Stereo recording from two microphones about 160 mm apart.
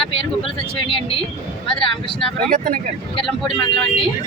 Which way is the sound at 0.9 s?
35° left (ahead or behind).